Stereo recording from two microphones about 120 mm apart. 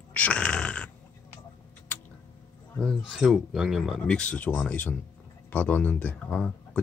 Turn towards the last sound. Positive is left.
turn(degrees=10)  # may be behind; listen again after turning